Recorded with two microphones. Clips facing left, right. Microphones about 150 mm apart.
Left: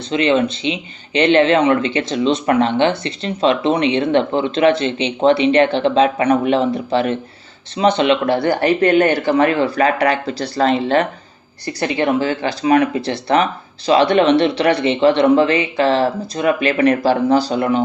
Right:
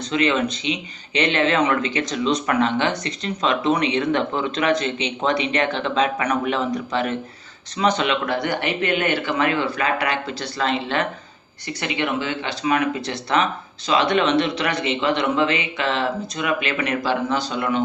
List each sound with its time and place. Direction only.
0.1 s a man's voice: 30° left (ahead or behind)